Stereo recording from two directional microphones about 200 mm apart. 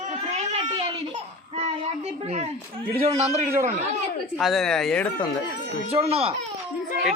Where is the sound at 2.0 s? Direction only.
30° right (ahead or behind).